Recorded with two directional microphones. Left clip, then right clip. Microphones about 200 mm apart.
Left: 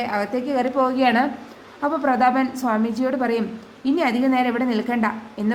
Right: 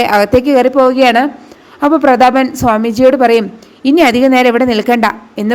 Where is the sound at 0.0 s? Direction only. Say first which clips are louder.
Right 15 dB; 45° right (ahead or behind).